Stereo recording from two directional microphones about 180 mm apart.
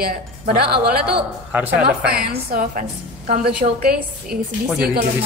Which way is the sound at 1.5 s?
10° right (ahead or behind).